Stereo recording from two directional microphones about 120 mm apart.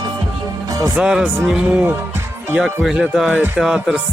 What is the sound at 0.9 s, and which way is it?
Speech, 5° right (ahead or behind).